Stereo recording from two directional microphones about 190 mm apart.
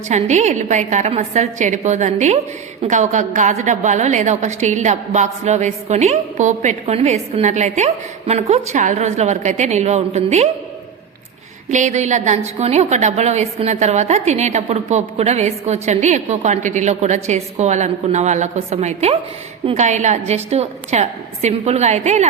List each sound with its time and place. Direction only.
0.1 s a woman's voice: 35° right (ahead or behind)
11.7 s a woman's voice: 40° right (ahead or behind)